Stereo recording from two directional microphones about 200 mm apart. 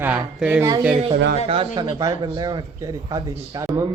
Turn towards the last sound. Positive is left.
turn(degrees=-15)  # may be behind; listen again after turning